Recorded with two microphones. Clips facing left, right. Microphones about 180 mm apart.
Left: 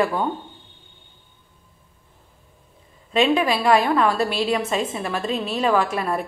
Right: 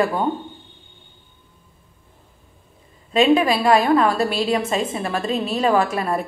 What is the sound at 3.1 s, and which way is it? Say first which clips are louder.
A woman's voice: right 3 dB; 40° right (ahead or behind).